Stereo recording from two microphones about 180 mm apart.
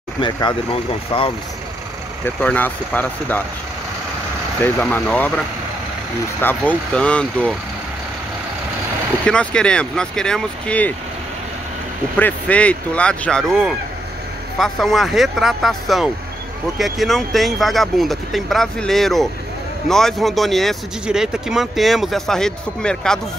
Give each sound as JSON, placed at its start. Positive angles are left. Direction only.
{"t": 0.2, "sound": "speech", "side_deg": 25}
{"t": 2.4, "sound": "speech", "side_deg": 10}
{"t": 4.6, "sound": "speech", "side_deg": 10}
{"t": 6.4, "sound": "speech", "side_deg": 10}
{"t": 9.2, "sound": "speech", "side_deg": 5}
{"t": 12.2, "sound": "speech", "side_deg": 10}